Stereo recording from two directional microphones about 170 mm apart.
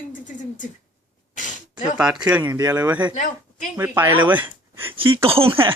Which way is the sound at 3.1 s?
50° left (ahead or behind).